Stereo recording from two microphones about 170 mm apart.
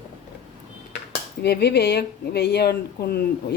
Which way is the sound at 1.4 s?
70° left (ahead or behind).